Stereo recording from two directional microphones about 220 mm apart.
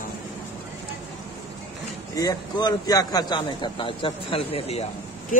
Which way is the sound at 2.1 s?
15° left (ahead or behind).